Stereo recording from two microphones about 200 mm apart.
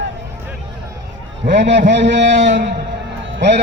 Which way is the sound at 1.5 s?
60° right (ahead or behind).